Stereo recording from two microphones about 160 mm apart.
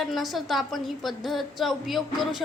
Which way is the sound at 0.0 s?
Centre (ahead or behind).